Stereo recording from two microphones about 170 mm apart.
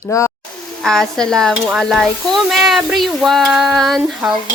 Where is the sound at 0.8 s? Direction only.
Centre (ahead or behind).